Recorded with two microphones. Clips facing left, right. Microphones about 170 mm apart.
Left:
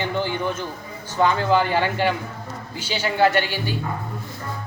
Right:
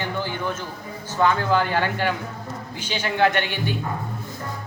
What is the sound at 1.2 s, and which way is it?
Speech, 15° left (ahead or behind).